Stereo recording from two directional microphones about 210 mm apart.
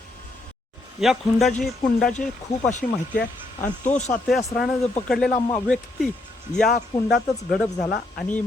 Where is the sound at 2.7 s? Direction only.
35° left (ahead or behind).